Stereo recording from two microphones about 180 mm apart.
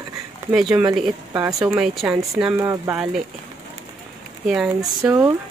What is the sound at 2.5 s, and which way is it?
Speech, 15° right (ahead or behind).